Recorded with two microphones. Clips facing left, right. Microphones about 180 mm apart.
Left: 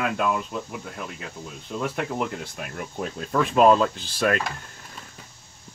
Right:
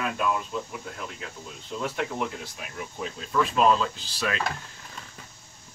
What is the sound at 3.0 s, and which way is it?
Speech, 50° left (ahead or behind).